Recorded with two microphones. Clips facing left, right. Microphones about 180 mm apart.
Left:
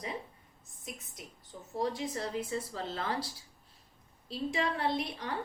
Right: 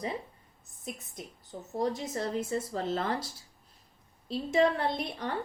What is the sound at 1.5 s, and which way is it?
A woman's voice, 40° right (ahead or behind).